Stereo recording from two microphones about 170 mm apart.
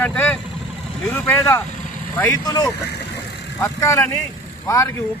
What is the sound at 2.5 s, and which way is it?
Speech, 20° left (ahead or behind).